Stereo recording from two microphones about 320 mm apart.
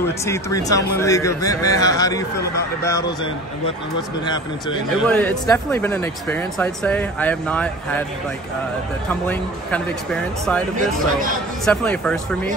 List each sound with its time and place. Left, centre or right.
0.2 s a man's voice: centre
5.0 s speech: centre
9.1 s speech: centre
10.8 s speech: right
11.6 s speech: centre